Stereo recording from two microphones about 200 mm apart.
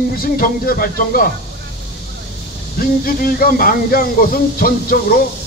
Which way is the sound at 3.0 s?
50° left (ahead or behind).